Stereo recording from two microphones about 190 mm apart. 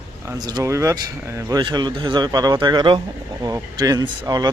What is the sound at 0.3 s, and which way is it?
A man's voice, 20° right (ahead or behind).